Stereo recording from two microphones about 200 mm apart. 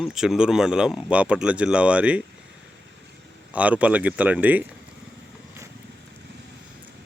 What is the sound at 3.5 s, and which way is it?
Speech, 5° right (ahead or behind).